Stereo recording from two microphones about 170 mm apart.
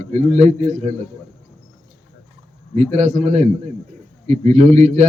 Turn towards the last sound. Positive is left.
turn(degrees=-40)  # may be behind; listen again after turning